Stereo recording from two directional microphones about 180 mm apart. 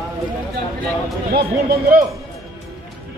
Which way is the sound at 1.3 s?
60° right (ahead or behind).